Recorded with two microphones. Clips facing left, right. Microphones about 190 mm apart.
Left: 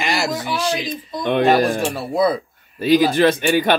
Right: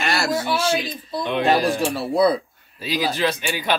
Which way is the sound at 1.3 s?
50° left (ahead or behind).